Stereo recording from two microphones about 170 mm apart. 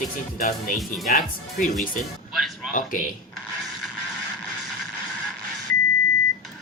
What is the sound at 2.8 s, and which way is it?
Speech, 55° left (ahead or behind).